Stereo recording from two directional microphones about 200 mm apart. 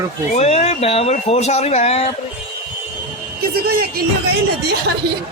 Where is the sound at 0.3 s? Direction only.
30° left (ahead or behind).